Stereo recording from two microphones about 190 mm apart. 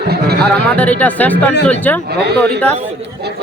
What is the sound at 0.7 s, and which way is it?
Speech, 10° left (ahead or behind).